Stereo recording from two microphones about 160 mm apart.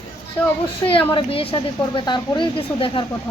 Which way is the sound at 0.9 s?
35° left (ahead or behind).